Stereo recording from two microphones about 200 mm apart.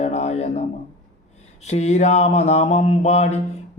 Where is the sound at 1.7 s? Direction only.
35° left (ahead or behind).